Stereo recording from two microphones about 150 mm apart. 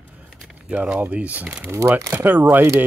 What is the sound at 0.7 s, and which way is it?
Speech, 10° right (ahead or behind).